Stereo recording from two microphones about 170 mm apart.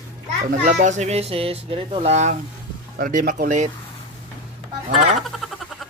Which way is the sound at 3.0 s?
60° right (ahead or behind).